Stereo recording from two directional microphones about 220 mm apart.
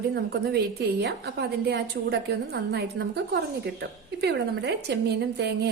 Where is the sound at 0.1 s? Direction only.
50° right (ahead or behind).